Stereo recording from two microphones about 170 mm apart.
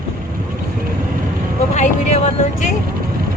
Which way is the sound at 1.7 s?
40° left (ahead or behind).